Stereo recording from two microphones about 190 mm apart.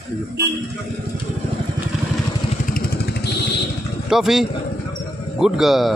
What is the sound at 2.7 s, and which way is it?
Motorcycle, 55° left (ahead or behind).